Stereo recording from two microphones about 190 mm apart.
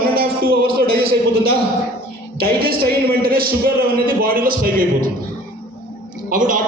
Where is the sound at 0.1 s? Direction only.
50° right (ahead or behind).